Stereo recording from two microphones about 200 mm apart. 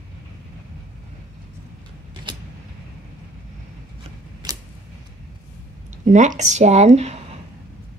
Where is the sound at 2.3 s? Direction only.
25° right (ahead or behind).